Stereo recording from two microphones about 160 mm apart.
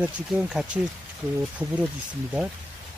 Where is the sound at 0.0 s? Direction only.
5° right (ahead or behind).